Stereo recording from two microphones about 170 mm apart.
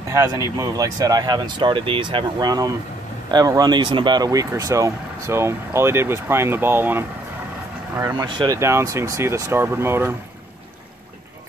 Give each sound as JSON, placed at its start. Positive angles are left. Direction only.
{"t": 0.1, "sound": "speech", "side_deg": -20}